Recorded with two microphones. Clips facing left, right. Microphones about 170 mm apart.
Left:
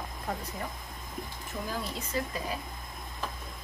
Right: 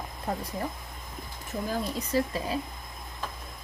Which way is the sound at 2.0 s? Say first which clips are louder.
Right 6 dB; 30° right (ahead or behind).